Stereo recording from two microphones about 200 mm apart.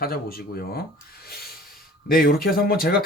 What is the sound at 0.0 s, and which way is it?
Speech, 50° left (ahead or behind).